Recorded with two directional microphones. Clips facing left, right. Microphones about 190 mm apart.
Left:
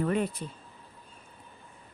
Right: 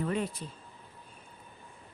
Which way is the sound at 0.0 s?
55° left (ahead or behind).